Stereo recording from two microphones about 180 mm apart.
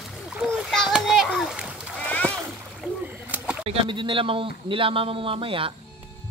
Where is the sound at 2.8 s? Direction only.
10° right (ahead or behind).